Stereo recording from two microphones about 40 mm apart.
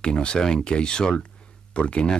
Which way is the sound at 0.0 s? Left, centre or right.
Left.